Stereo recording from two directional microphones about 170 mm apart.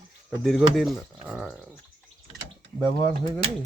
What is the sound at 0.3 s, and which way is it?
Speech, centre (ahead or behind).